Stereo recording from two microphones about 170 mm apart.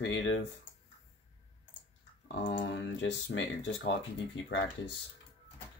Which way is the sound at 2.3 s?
90° left.